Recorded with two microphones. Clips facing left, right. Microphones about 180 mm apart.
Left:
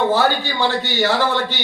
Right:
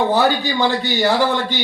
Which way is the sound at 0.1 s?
15° right (ahead or behind).